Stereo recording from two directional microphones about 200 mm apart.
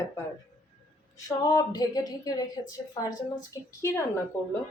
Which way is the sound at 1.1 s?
20° left (ahead or behind).